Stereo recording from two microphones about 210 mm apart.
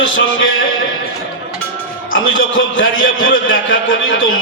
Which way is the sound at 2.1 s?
70° left (ahead or behind).